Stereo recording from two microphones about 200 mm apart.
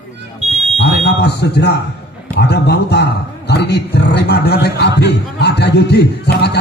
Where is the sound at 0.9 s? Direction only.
55° left (ahead or behind).